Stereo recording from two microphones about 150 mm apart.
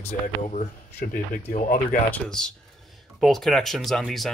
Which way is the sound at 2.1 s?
5° left (ahead or behind).